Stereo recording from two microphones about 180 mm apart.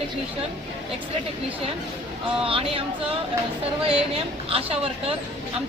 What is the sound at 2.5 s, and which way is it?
Speech, 30° right (ahead or behind).